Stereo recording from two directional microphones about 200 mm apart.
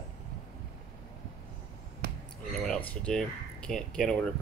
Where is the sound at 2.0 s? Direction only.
50° right (ahead or behind).